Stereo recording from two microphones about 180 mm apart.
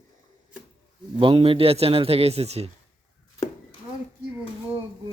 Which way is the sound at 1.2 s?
30° right (ahead or behind).